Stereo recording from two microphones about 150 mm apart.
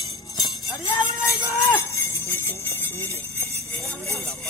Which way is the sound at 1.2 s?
20° left (ahead or behind).